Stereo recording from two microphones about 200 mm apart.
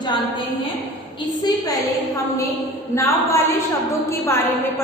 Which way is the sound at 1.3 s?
20° left (ahead or behind).